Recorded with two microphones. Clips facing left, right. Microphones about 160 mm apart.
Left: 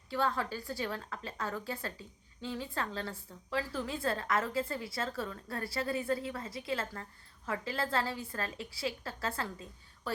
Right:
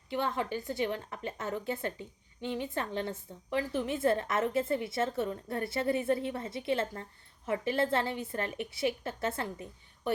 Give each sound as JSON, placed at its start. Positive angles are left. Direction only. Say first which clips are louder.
{"t": 0.1, "sound": "a woman's voice", "louder": "right 1 dB", "side_deg": -20}